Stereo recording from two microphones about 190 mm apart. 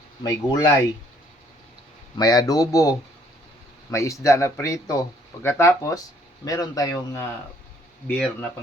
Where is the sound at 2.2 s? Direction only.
20° left (ahead or behind).